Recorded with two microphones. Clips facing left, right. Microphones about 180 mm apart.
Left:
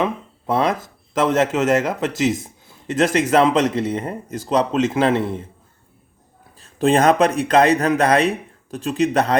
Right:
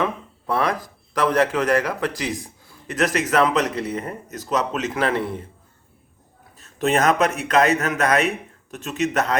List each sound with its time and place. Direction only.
0.0 s speech: 25° left (ahead or behind)
6.6 s speech: 30° left (ahead or behind)